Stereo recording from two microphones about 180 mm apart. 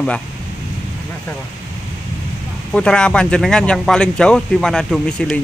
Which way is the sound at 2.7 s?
5° left (ahead or behind).